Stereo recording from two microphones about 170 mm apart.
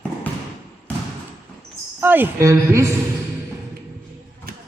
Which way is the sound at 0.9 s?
10° left (ahead or behind).